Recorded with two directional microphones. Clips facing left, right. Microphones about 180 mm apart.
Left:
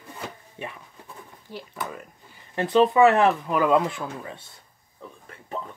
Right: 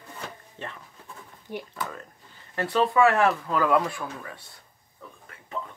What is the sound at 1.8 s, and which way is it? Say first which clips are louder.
Speech: left 1 dB; 15° left (ahead or behind).